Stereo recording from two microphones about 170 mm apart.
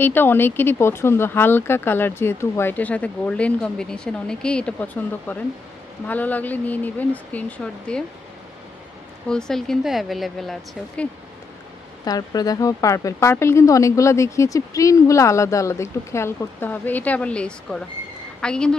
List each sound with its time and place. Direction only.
0.0 s a woman's voice: 10° left (ahead or behind)
9.3 s speech: 5° left (ahead or behind)
12.0 s a woman's voice: 20° left (ahead or behind); by 18.8 s 5° left (ahead or behind)